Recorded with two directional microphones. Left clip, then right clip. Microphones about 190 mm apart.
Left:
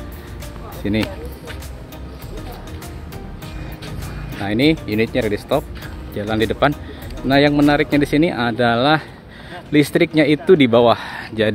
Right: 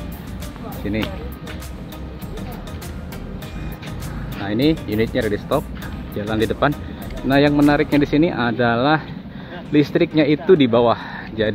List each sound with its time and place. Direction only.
0.8 s speech: 35° left (ahead or behind)
4.4 s speech: 30° left (ahead or behind)